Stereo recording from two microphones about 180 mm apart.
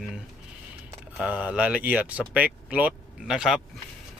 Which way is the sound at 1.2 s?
10° right (ahead or behind).